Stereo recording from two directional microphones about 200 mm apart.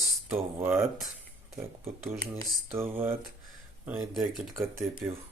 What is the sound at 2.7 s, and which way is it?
Speech, 10° right (ahead or behind).